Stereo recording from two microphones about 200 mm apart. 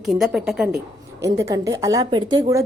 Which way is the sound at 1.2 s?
15° right (ahead or behind).